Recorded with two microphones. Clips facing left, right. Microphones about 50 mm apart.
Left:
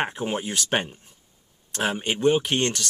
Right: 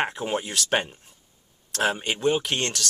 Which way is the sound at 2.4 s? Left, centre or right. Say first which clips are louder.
Left 3 dB; centre.